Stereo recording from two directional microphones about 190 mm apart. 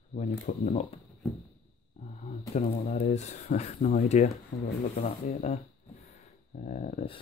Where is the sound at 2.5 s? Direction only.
40° left (ahead or behind).